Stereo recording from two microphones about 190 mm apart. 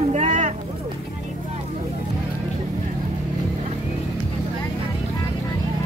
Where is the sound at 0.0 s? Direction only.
35° right (ahead or behind).